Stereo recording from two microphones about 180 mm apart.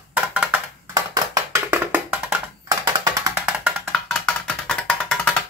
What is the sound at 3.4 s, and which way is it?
Music, 5° right (ahead or behind).